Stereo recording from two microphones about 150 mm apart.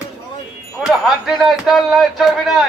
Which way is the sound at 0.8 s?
5° right (ahead or behind).